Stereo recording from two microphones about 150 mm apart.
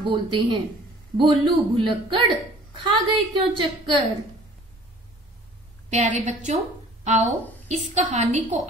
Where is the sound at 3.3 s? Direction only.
35° right (ahead or behind).